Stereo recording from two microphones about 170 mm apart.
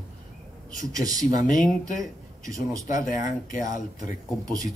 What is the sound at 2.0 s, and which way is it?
Speech, 20° right (ahead or behind).